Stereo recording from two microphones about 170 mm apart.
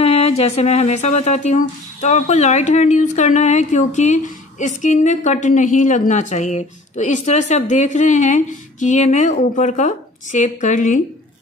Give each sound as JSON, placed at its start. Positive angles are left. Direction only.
{"t": 0.0, "sound": "speech", "side_deg": 35}